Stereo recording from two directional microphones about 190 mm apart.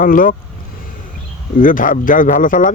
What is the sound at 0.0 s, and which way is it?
Speech, 45° left (ahead or behind).